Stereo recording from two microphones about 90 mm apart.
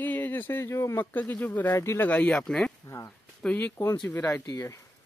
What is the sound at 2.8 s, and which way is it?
Speech, 35° left (ahead or behind).